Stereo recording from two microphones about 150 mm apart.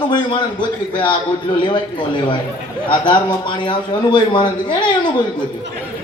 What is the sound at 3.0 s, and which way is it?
A man's voice, 30° left (ahead or behind).